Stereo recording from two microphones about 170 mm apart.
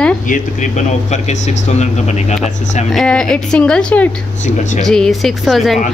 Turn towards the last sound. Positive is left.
turn(degrees=0)  # may be behind; listen again after turning